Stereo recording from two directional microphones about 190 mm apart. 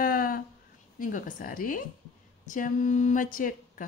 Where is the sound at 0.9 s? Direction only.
45° left (ahead or behind).